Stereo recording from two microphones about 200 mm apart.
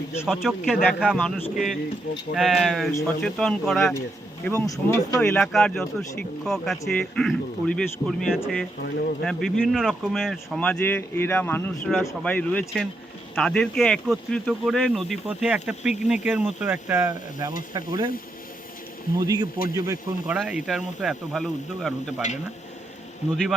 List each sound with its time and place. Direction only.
0.3 s speech: centre (ahead or behind)
4.4 s speech: 15° left (ahead or behind)
5.2 s speech: 5° left (ahead or behind); by 18.1 s 20° right (ahead or behind)
19.2 s speech: 20° right (ahead or behind); by 22.1 s centre (ahead or behind)
23.2 s speech: 35° left (ahead or behind)